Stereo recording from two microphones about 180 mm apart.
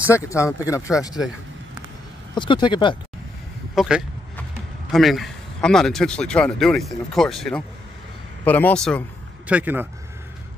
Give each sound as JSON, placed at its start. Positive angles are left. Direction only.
{"t": 0.0, "sound": "speech", "side_deg": 15}
{"t": 2.3, "sound": "speech", "side_deg": 25}
{"t": 3.7, "sound": "speech", "side_deg": 0}
{"t": 9.5, "sound": "speech", "side_deg": -10}